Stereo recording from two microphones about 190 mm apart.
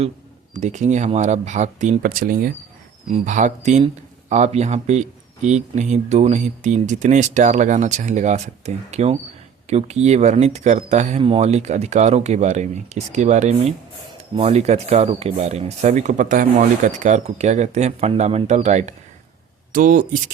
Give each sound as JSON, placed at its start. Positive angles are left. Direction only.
{"t": 0.5, "sound": "speech", "side_deg": -40}